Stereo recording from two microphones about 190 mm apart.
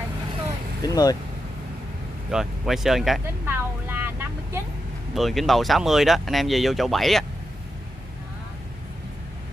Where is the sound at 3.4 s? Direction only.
10° right (ahead or behind).